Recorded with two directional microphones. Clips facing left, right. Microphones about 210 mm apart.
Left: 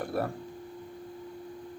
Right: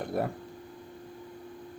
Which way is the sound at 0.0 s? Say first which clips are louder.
Even; 20° right (ahead or behind).